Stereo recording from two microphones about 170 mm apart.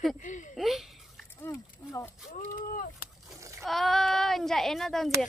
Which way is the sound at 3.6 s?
Centre (ahead or behind).